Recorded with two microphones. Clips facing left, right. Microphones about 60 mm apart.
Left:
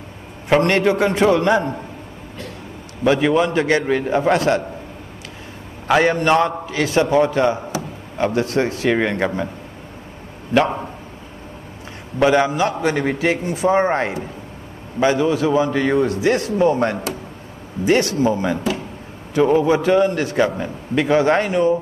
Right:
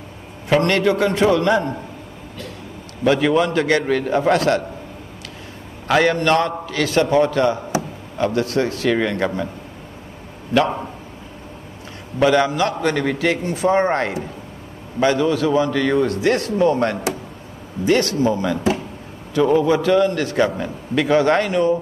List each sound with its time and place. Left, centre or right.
0.5 s a man's voice: left
3.0 s a man's voice: centre
5.9 s a man's voice: centre
12.2 s a man's voice: centre
20.2 s a man's voice: centre